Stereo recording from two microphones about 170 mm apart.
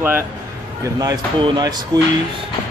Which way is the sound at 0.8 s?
20° right (ahead or behind).